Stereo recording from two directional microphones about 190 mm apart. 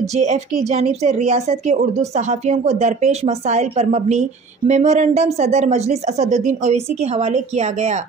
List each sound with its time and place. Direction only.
0.0 s a woman's voice: 35° right (ahead or behind)